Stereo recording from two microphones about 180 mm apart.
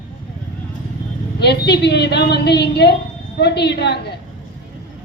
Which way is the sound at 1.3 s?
65° left (ahead or behind).